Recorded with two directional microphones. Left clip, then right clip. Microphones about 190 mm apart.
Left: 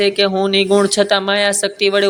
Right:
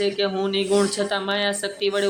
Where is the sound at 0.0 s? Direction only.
25° left (ahead or behind).